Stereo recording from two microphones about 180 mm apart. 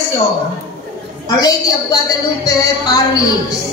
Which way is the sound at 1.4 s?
20° left (ahead or behind).